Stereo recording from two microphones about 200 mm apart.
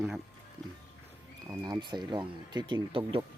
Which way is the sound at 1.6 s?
20° right (ahead or behind).